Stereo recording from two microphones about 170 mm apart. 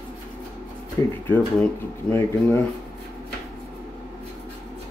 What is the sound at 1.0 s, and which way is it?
Speech, 15° left (ahead or behind).